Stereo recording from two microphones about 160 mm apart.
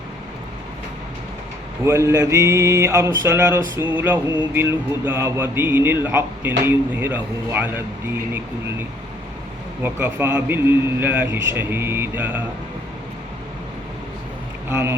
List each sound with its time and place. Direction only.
1.8 s speech: 15° right (ahead or behind)
9.8 s speech: 15° right (ahead or behind)
14.7 s speech: 15° right (ahead or behind)